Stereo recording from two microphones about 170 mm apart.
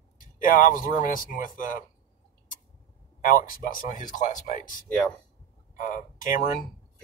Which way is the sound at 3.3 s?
55° left (ahead or behind).